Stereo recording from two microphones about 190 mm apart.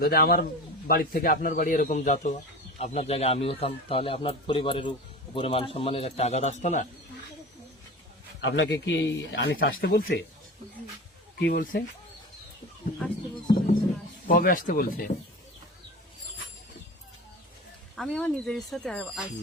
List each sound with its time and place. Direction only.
0.0 s speech: 55° left (ahead or behind)
8.4 s speech: 70° left (ahead or behind)
11.3 s speech: 60° left (ahead or behind)
14.3 s speech: 45° left (ahead or behind)
17.9 s speech: centre (ahead or behind)